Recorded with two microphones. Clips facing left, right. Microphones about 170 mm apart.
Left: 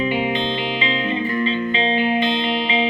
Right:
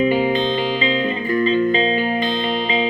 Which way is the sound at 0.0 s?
45° right (ahead or behind).